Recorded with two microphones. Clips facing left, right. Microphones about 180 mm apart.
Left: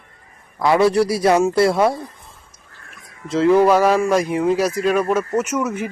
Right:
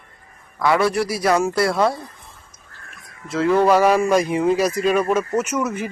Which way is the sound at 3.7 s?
10° right (ahead or behind).